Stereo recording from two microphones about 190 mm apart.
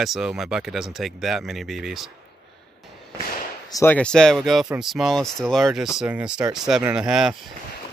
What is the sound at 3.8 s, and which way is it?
Speech, 10° left (ahead or behind).